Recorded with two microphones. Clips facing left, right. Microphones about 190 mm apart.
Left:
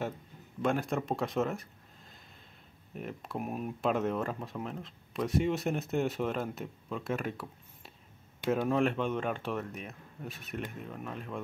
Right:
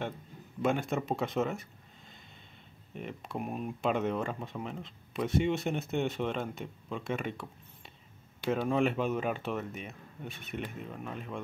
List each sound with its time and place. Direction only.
0.6 s speech: centre (ahead or behind)
2.9 s speech: centre (ahead or behind)